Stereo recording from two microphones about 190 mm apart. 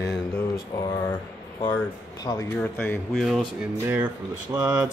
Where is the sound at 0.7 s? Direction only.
20° left (ahead or behind).